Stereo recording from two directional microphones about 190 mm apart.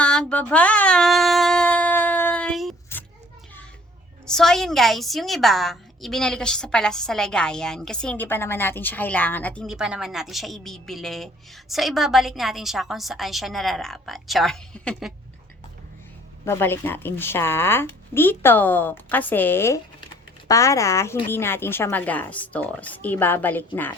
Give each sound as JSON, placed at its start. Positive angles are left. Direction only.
{"t": 0.0, "sound": "a sound", "side_deg": 5}
{"t": 4.3, "sound": "a woman's voice", "side_deg": 0}
{"t": 16.5, "sound": "a woman's voice", "side_deg": 10}